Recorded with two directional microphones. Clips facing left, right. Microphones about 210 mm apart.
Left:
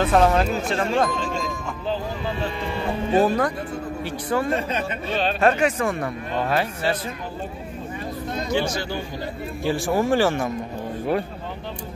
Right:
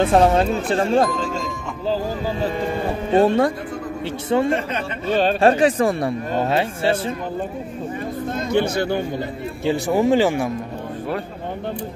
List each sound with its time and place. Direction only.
0.0 s speech: 25° right (ahead or behind)
2.4 s speech: 40° right (ahead or behind)
3.1 s speech: 25° right (ahead or behind)
5.1 s speech: 45° right (ahead or behind)
5.4 s speech: 30° right (ahead or behind)
8.3 s speech: 55° right (ahead or behind)
9.7 s speech: 20° right (ahead or behind)